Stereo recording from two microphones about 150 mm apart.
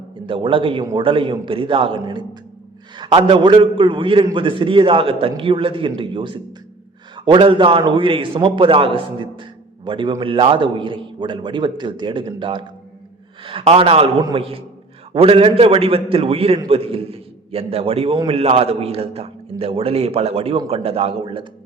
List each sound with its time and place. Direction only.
0.3 s a man's voice: 35° right (ahead or behind)